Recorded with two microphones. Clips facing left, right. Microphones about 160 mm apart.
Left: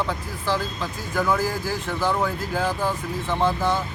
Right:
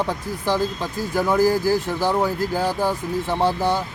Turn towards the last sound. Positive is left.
turn(degrees=-35)  # may be behind; listen again after turning